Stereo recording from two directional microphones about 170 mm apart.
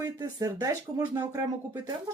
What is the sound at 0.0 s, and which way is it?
Speech, 20° right (ahead or behind).